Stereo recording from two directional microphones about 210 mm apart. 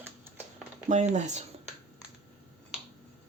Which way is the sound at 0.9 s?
35° right (ahead or behind).